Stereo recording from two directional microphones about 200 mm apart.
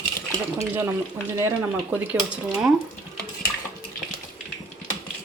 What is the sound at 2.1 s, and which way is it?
Speech, 5° right (ahead or behind).